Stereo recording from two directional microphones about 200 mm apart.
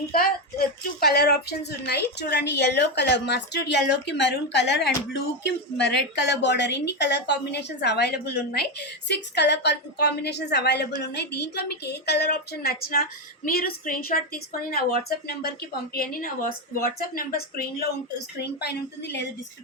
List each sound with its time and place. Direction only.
0.1 s a woman's voice: 50° left (ahead or behind)